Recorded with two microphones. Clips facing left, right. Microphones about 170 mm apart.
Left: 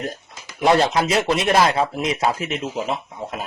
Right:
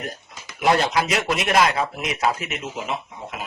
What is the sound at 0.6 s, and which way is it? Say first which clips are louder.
Speech: left 3 dB; 25° left (ahead or behind).